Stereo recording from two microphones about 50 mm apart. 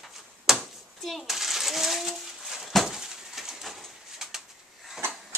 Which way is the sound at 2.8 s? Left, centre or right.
Centre.